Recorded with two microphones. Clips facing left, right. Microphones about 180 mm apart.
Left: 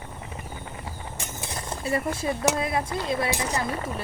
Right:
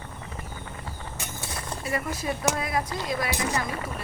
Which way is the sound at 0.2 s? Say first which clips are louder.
Left 1 dB; 20° left (ahead or behind).